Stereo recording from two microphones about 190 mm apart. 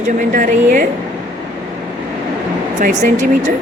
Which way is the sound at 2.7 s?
40° right (ahead or behind).